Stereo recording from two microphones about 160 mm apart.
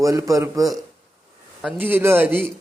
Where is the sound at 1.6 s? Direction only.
5° right (ahead or behind).